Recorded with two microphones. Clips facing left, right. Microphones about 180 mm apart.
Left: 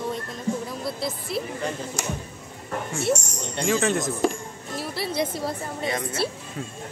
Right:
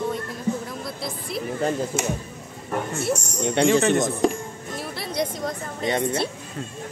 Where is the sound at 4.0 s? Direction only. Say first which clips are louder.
Right 3 dB; centre (ahead or behind).